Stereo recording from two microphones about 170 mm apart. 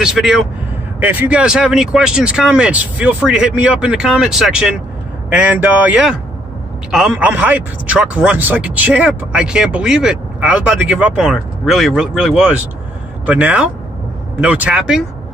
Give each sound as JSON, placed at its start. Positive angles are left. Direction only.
{"t": 0.0, "sound": "speech", "side_deg": -5}